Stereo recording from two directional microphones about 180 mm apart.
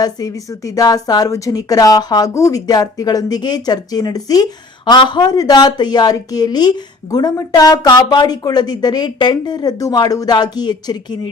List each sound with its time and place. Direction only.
0.0 s a woman's voice: 20° left (ahead or behind)